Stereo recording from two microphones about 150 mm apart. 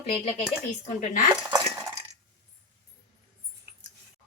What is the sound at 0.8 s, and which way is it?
Speech, 55° left (ahead or behind).